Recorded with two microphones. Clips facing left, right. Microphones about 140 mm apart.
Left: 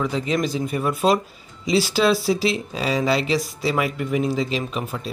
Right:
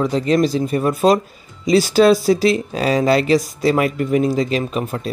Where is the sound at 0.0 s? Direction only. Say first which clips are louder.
Right 6 dB; 40° right (ahead or behind).